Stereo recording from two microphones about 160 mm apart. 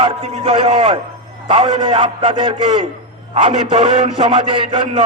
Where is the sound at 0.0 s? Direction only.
35° right (ahead or behind).